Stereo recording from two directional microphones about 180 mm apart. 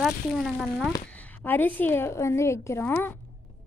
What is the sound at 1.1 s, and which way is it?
A woman's voice, 10° left (ahead or behind).